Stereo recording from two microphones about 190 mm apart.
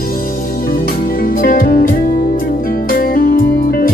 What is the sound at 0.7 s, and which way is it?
Music, 50° left (ahead or behind).